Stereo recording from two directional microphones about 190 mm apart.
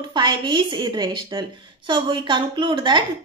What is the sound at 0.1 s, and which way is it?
A woman's voice, 25° right (ahead or behind).